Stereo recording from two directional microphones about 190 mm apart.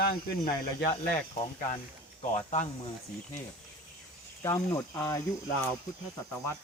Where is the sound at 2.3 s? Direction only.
40° left (ahead or behind).